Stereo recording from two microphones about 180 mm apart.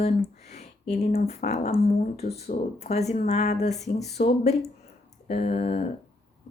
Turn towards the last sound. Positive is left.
turn(degrees=40)  # may be behind; listen again after turning